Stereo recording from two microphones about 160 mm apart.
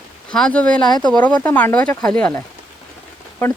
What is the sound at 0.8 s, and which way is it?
Speech, 25° left (ahead or behind).